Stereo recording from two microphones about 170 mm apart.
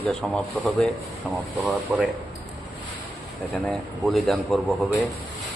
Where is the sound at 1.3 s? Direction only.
5° right (ahead or behind).